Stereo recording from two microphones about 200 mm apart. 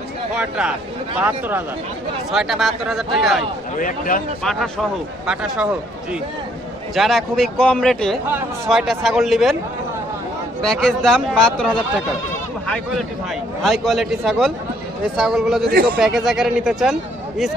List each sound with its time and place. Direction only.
0.4 s a man's voice: 5° right (ahead or behind)
2.3 s a man's voice: centre (ahead or behind)
3.8 s speech: 45° left (ahead or behind)
4.4 s a man's voice: centre (ahead or behind)
7.0 s a man's voice: centre (ahead or behind)
10.6 s a man's voice: 5° left (ahead or behind)